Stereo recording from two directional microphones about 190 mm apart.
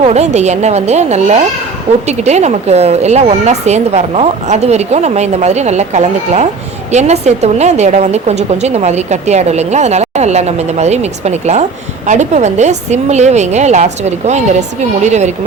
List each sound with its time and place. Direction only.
0.0 s a woman's voice: 35° right (ahead or behind)